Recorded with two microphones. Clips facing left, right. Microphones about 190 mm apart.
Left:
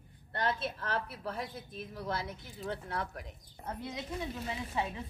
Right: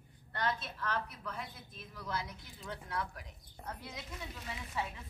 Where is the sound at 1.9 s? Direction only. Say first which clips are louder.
Left 3 dB; 25° left (ahead or behind).